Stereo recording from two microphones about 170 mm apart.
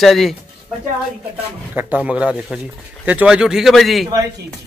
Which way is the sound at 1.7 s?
10° right (ahead or behind).